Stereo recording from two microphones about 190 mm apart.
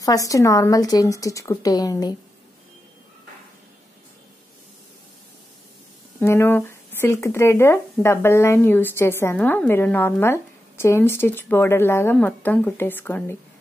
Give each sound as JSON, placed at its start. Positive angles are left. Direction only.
{"t": 0.0, "sound": "speech", "side_deg": 20}
{"t": 6.2, "sound": "speech", "side_deg": 10}